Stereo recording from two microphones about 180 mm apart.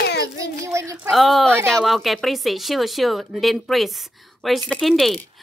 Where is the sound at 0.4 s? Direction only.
15° right (ahead or behind).